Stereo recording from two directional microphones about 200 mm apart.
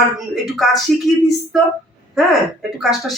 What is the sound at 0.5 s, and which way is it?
Speech, centre (ahead or behind).